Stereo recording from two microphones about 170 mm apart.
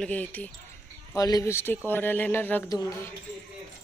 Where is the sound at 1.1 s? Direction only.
20° left (ahead or behind).